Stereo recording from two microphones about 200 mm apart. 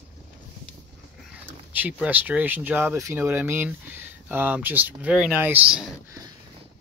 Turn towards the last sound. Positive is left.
turn(degrees=-5)  # may be behind; listen again after turning